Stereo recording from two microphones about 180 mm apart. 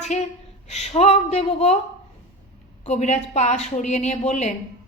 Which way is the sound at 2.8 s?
40° left (ahead or behind).